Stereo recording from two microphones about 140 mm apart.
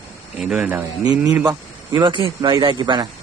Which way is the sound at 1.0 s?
25° right (ahead or behind).